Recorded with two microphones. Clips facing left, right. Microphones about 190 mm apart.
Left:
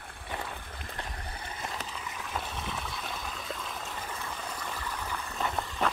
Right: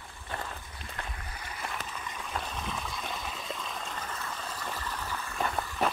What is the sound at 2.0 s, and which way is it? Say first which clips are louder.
Stream: even; 5° left (ahead or behind).